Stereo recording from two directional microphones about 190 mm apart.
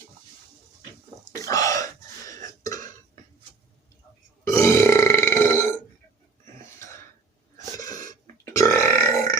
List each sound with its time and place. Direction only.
1.4 s burping: 15° left (ahead or behind)
4.4 s burping: 15° left (ahead or behind)
6.7 s throat clearing: 15° left (ahead or behind)
7.8 s burping: 20° left (ahead or behind)